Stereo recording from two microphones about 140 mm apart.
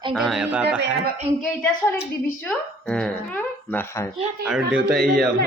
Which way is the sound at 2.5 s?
5° left (ahead or behind).